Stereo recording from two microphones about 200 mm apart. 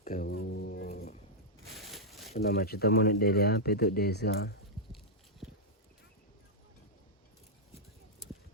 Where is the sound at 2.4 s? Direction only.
50° left (ahead or behind).